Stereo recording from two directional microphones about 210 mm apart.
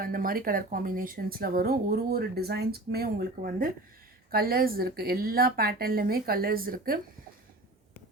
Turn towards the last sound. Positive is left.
turn(degrees=-45)  # may be behind; listen again after turning